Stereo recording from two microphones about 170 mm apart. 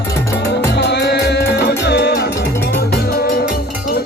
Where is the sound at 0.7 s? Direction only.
80° left.